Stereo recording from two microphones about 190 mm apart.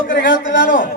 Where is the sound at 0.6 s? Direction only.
45° left (ahead or behind).